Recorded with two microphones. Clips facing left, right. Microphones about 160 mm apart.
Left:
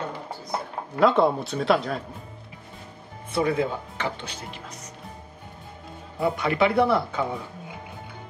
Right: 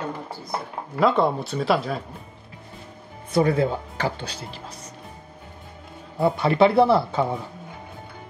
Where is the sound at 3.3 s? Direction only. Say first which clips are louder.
Right 4 dB; 35° right (ahead or behind).